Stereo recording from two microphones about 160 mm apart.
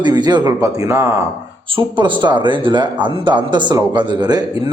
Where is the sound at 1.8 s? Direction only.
30° right (ahead or behind).